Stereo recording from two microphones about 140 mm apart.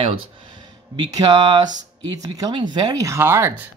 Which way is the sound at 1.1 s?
30° right (ahead or behind).